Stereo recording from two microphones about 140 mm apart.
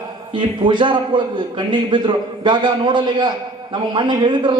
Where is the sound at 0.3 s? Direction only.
35° right (ahead or behind).